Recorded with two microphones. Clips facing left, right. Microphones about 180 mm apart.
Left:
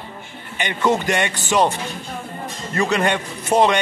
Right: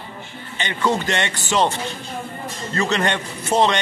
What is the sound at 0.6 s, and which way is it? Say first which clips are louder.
A man's voice: left 2 dB; 15° left (ahead or behind).